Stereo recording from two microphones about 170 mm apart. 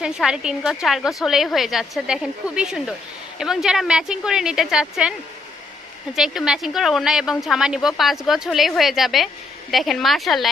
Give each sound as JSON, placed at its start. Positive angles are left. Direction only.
{"t": 0.0, "sound": "speech", "side_deg": -5}
{"t": 6.1, "sound": "speech", "side_deg": 0}